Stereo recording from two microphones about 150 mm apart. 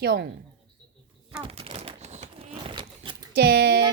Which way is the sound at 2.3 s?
40° right (ahead or behind).